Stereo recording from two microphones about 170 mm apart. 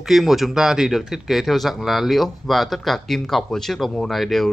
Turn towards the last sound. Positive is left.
turn(degrees=0)  # may be behind; listen again after turning